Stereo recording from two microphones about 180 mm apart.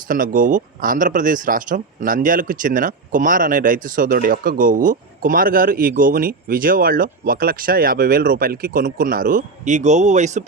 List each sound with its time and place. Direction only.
0.1 s speech: 50° right (ahead or behind)